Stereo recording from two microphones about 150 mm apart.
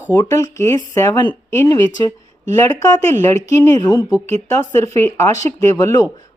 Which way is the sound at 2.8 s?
20° left (ahead or behind).